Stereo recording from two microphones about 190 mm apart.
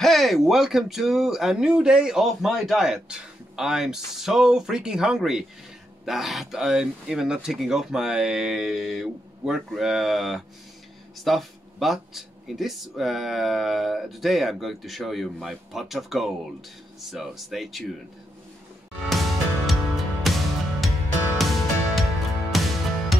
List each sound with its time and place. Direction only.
0.0 s speech: centre (ahead or behind)
19.0 s music: centre (ahead or behind)
21.4 s music: centre (ahead or behind)